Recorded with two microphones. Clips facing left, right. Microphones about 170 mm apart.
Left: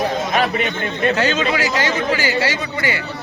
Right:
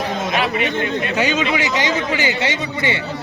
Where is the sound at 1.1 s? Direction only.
15° right (ahead or behind).